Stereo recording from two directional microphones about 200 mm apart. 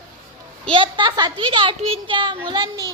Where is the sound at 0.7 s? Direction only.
25° right (ahead or behind).